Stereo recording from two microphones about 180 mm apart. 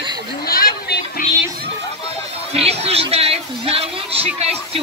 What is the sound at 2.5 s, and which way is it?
Speech, 35° right (ahead or behind).